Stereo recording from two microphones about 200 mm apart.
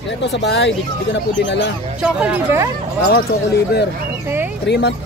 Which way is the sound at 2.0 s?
5° right (ahead or behind).